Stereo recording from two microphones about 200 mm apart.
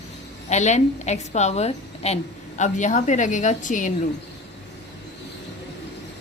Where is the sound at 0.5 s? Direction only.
35° left (ahead or behind).